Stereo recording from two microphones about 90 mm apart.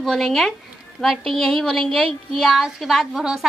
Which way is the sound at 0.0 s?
Centre (ahead or behind).